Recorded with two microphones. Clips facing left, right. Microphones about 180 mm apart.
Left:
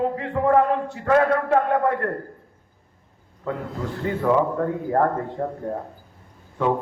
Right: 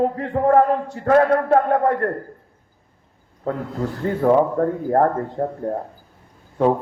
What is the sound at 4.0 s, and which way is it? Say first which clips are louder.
A man's voice: right 4 dB; 40° right (ahead or behind).